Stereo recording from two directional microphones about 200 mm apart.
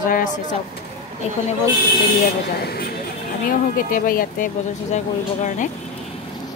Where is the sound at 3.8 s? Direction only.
45° left (ahead or behind).